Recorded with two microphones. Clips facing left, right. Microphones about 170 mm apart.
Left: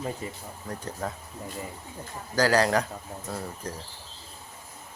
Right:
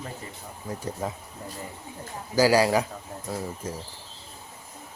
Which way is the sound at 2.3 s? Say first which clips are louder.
Right 3 dB; 10° right (ahead or behind).